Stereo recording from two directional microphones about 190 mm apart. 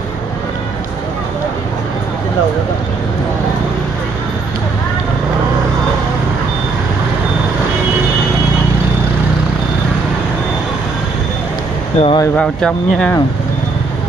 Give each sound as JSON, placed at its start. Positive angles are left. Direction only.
{"t": 12.0, "sound": "speech", "side_deg": 25}
{"t": 12.4, "sound": "speech", "side_deg": 5}